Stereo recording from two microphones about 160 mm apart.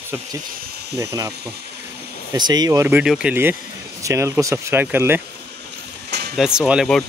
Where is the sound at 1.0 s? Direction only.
20° right (ahead or behind).